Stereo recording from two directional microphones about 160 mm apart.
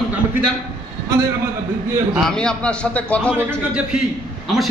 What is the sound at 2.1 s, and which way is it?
A man's voice, 5° left (ahead or behind).